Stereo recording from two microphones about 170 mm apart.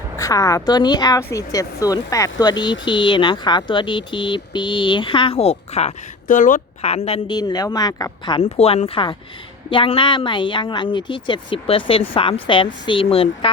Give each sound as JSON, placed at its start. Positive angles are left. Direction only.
{"t": 0.2, "sound": "speech", "side_deg": 20}
{"t": 7.3, "sound": "speech", "side_deg": 25}
{"t": 8.4, "sound": "speech", "side_deg": 40}